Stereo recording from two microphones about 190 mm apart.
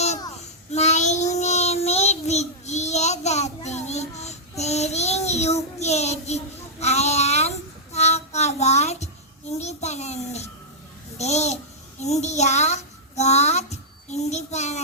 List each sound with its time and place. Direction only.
0.7 s child singing: 35° left (ahead or behind)
11.2 s a child's voice: 35° left (ahead or behind)